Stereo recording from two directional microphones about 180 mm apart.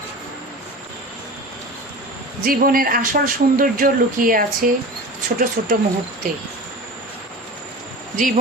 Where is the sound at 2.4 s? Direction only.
50° right (ahead or behind).